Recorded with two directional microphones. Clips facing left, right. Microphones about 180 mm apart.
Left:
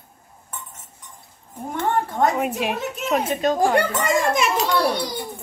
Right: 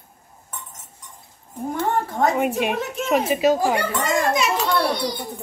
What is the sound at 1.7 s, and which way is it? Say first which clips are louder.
A woman's voice: left 1 dB; centre (ahead or behind).